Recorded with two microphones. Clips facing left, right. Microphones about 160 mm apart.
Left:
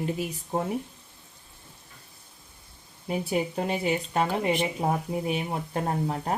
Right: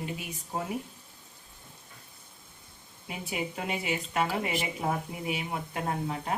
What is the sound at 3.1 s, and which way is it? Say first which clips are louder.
Speech: left 8 dB; 35° left (ahead or behind).